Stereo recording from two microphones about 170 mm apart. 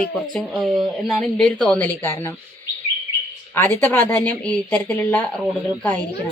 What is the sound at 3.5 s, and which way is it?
Speech, 15° left (ahead or behind).